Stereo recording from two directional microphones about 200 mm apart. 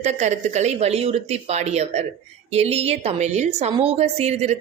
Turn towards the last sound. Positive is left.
turn(degrees=-35)  # may be behind; listen again after turning